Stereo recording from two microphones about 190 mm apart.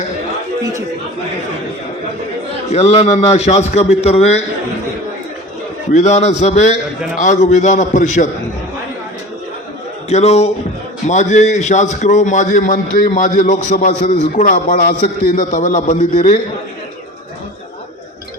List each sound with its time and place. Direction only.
2.7 s a man's voice: 30° left (ahead or behind)
5.9 s a man's voice: 35° left (ahead or behind)
10.1 s a man's voice: 35° left (ahead or behind)